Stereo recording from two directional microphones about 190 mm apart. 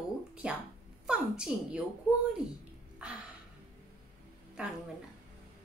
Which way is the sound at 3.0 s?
5° right (ahead or behind).